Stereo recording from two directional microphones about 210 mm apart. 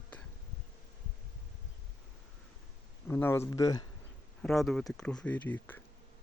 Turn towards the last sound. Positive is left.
turn(degrees=10)  # may be behind; listen again after turning